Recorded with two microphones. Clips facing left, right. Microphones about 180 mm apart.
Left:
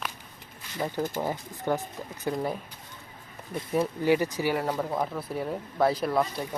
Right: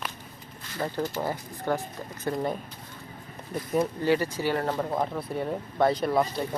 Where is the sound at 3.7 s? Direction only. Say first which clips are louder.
Even; 15° left (ahead or behind).